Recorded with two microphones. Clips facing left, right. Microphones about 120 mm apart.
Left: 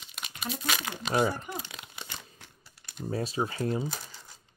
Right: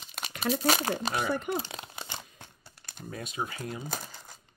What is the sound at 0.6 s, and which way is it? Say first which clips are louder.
Speech: right 6 dB; 40° right (ahead or behind).